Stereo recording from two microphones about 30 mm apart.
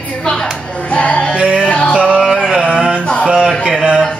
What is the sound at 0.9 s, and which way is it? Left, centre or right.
Music, left.